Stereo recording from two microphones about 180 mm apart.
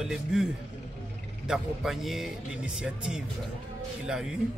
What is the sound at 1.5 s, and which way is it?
Speech, centre (ahead or behind).